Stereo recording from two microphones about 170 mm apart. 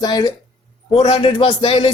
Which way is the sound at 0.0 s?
25° left (ahead or behind).